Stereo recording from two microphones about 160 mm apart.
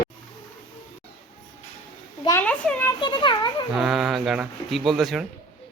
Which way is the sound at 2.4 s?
10° left (ahead or behind).